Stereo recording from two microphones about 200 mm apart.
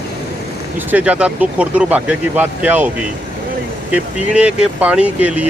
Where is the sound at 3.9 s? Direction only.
5° right (ahead or behind).